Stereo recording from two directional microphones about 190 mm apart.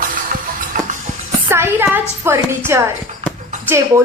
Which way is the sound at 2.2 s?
15° right (ahead or behind).